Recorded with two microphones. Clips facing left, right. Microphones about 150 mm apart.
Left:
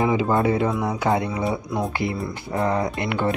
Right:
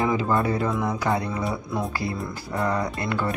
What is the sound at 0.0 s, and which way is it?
Speech, 20° left (ahead or behind).